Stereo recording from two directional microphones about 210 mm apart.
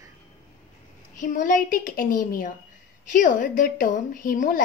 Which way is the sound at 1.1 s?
40° left (ahead or behind).